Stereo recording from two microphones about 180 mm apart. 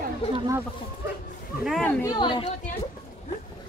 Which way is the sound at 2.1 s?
25° left (ahead or behind).